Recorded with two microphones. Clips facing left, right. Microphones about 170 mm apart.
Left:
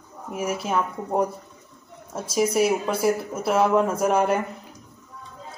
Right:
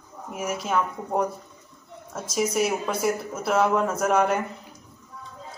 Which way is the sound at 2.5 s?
30° left (ahead or behind).